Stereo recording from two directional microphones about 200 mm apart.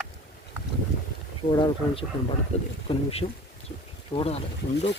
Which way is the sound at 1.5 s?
20° left (ahead or behind).